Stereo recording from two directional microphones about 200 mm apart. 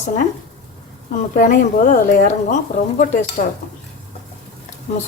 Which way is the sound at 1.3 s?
40° left (ahead or behind).